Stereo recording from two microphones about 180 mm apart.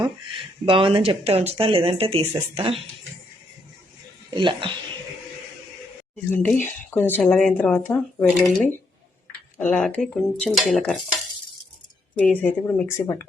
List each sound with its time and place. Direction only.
0.6 s speech: 30° right (ahead or behind)
4.4 s speech: 25° right (ahead or behind)
6.3 s speech: 10° left (ahead or behind)
9.6 s dishes: 5° left (ahead or behind)
12.2 s speech: 10° left (ahead or behind)